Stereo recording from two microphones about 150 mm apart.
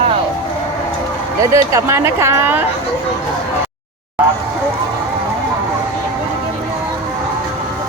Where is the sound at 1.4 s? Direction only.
20° right (ahead or behind).